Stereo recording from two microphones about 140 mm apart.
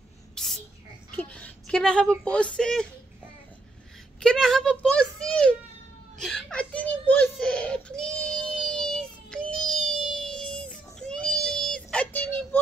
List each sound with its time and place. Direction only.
0.3 s a sound: 5° left (ahead or behind)
1.1 s a woman's voice: 10° left (ahead or behind)
4.2 s a child's voice: 5° left (ahead or behind)
6.1 s whimper: 5° left (ahead or behind)